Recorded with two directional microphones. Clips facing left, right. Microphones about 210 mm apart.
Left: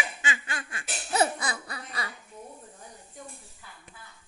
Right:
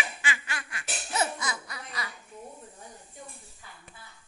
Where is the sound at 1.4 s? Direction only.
30° left (ahead or behind).